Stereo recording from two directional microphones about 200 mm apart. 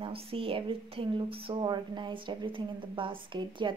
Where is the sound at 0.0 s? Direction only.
30° right (ahead or behind).